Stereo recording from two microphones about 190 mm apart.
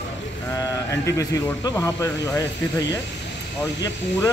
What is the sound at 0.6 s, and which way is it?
Speech, 15° left (ahead or behind).